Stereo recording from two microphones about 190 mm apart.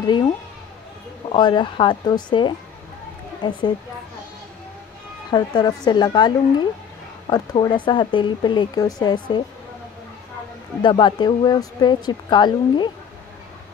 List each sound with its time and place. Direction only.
0.0 s speech: 20° left (ahead or behind)
1.3 s speech: 25° left (ahead or behind)
5.3 s speech: 20° left (ahead or behind)
10.8 s speech: 25° left (ahead or behind)